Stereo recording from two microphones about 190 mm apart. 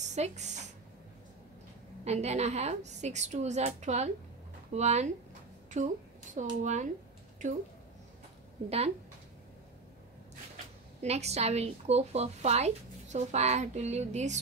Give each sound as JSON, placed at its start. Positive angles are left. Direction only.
{"t": 0.0, "sound": "speech", "side_deg": -35}
{"t": 2.0, "sound": "a woman's voice", "side_deg": -35}
{"t": 8.6, "sound": "a woman's voice", "side_deg": -35}
{"t": 11.0, "sound": "a woman's voice", "side_deg": -35}